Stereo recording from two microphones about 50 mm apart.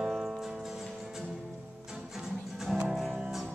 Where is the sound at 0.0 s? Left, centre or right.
Centre.